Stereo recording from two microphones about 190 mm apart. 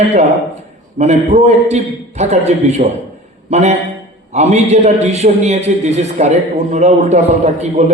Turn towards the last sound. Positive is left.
turn(degrees=-35)  # may be behind; listen again after turning